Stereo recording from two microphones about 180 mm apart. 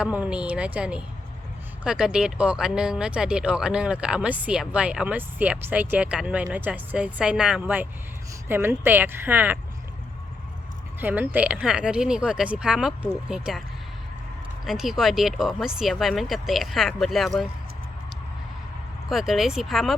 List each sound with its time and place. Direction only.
0.0 s speech: 5° right (ahead or behind)
11.0 s speech: 10° right (ahead or behind)
14.6 s speech: centre (ahead or behind)
19.0 s speech: centre (ahead or behind)